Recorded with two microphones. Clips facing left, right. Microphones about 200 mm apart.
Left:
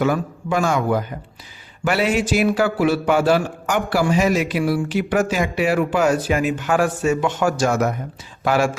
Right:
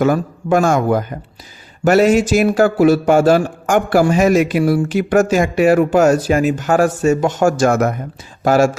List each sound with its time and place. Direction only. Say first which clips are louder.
0.0 s a man's voice: right 5 dB; 45° right (ahead or behind)